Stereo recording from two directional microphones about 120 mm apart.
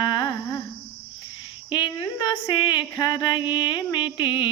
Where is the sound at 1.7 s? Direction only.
40° left (ahead or behind).